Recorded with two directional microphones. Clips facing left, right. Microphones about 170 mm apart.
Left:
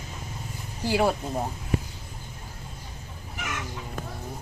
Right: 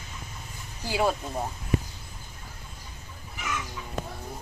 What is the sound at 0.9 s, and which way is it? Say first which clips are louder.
Speech: left 2 dB; 5° left (ahead or behind).